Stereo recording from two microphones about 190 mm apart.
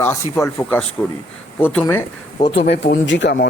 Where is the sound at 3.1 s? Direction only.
70° left (ahead or behind).